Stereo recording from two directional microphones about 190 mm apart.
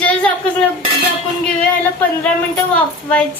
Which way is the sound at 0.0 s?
5° left (ahead or behind).